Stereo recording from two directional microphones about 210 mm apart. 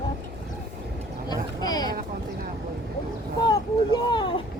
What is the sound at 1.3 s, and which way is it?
Speech, 20° left (ahead or behind).